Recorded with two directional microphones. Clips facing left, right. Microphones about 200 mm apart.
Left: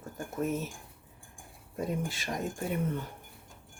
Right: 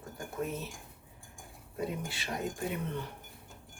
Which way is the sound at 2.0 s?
45° left (ahead or behind).